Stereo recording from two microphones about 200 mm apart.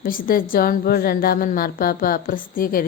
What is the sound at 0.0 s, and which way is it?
A woman's voice, 45° left (ahead or behind).